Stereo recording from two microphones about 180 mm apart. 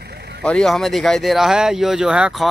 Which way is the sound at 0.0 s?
65° right (ahead or behind).